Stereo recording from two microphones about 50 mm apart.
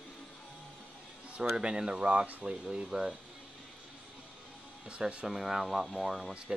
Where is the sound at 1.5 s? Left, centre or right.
Centre.